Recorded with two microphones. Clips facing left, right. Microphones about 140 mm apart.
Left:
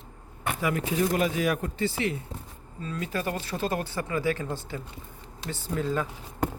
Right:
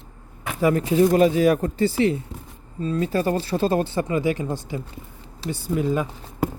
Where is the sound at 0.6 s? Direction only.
35° right (ahead or behind).